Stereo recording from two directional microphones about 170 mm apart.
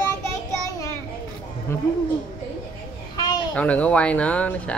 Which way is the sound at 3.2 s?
25° left (ahead or behind).